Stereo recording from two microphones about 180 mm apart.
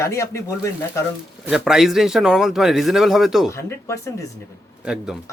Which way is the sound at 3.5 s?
15° left (ahead or behind).